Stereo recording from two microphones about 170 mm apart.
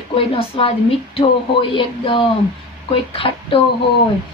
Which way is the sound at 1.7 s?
30° left (ahead or behind).